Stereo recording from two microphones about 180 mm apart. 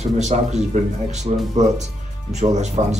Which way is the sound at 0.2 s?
40° right (ahead or behind).